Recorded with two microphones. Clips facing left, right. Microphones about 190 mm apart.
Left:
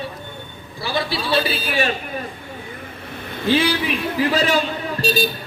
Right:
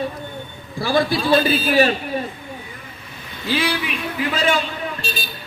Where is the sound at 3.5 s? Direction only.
35° left (ahead or behind).